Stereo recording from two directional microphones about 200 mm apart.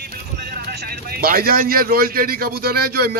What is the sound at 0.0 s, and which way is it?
Speech, 55° right (ahead or behind).